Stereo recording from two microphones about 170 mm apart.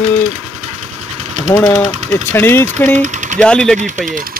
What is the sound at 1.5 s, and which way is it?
Speech, 20° left (ahead or behind).